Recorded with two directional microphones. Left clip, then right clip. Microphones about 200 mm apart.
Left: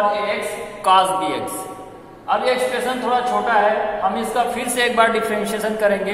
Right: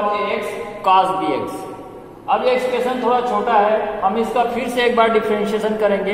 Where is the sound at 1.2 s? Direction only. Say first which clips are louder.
Right 2 dB; 10° left (ahead or behind).